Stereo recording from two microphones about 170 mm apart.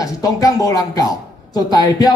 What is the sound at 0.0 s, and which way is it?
A man's voice, 20° left (ahead or behind).